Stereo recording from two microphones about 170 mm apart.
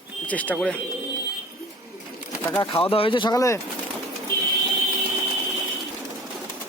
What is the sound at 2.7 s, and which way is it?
Speech, 35° left (ahead or behind).